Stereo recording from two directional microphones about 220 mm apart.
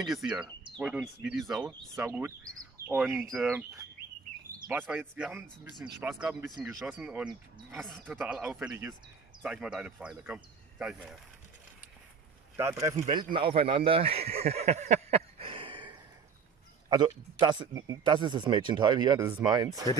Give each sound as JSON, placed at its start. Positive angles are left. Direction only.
{"t": 0.0, "sound": "speech", "side_deg": 0}
{"t": 12.5, "sound": "speech", "side_deg": -10}
{"t": 13.5, "sound": "a sound", "side_deg": -25}
{"t": 16.9, "sound": "speech", "side_deg": -20}